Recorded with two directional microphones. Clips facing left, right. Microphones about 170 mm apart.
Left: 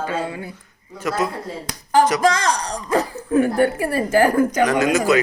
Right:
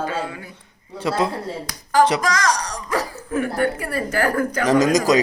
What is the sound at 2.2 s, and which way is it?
A woman's voice, 30° left (ahead or behind).